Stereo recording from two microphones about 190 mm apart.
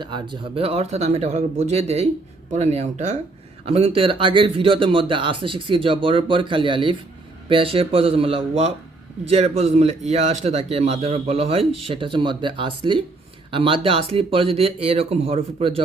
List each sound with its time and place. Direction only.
0.0 s speech: 25° right (ahead or behind)